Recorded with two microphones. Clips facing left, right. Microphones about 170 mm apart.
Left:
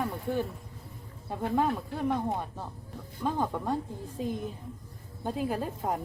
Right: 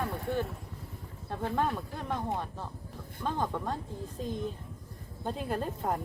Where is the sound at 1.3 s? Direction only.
5° left (ahead or behind).